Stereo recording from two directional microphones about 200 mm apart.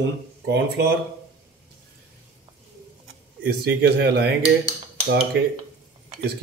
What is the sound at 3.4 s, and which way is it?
Speech, 50° right (ahead or behind).